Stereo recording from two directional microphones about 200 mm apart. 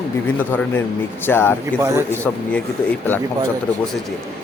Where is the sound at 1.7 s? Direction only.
15° right (ahead or behind).